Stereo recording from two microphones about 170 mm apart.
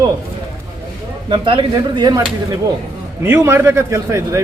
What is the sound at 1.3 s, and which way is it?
Speech, 30° right (ahead or behind).